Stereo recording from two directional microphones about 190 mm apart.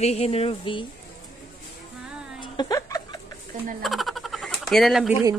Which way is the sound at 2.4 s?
25° left (ahead or behind).